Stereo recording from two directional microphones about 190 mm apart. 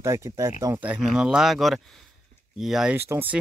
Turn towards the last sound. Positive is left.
turn(degrees=-10)  # may be behind; listen again after turning